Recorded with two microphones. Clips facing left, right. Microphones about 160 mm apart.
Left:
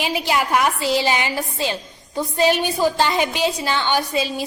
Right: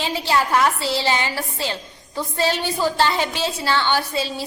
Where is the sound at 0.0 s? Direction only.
15° left (ahead or behind).